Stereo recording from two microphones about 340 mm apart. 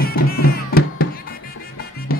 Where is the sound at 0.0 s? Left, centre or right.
Left.